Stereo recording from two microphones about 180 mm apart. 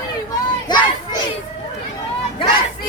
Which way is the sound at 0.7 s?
25° left (ahead or behind).